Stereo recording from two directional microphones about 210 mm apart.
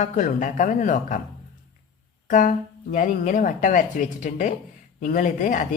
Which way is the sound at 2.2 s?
40° left (ahead or behind).